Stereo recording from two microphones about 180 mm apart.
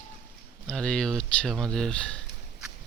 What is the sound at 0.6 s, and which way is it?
Speech, 5° left (ahead or behind).